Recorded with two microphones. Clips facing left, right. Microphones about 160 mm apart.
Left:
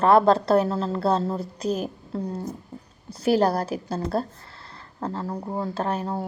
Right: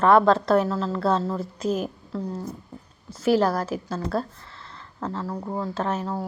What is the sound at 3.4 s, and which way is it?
A woman's voice, 35° left (ahead or behind).